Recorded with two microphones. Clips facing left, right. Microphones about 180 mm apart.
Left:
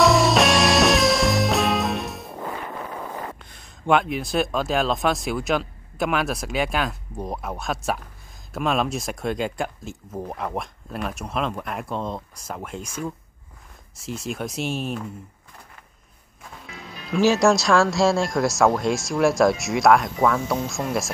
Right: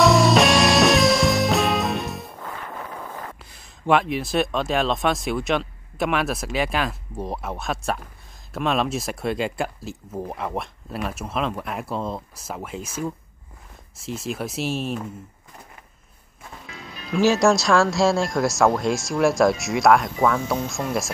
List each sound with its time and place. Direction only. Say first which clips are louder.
0.0 s music: right 1 dB; centre (ahead or behind)
2.3 s a sound: left 3 dB; 20° left (ahead or behind)
3.4 s speech: right 1 dB; centre (ahead or behind)
16.7 s speech: even; centre (ahead or behind)